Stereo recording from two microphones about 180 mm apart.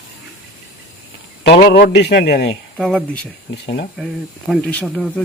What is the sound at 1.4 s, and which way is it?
A man's voice, 60° left (ahead or behind).